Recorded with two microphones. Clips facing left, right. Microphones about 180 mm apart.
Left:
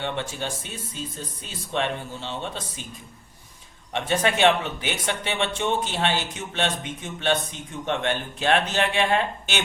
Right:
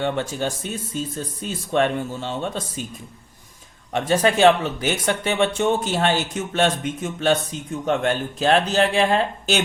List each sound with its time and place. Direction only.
0.0 s speech: 40° right (ahead or behind)
3.9 s speech: 40° right (ahead or behind)